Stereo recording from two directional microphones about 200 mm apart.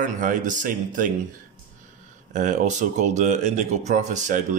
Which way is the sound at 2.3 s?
40° right (ahead or behind).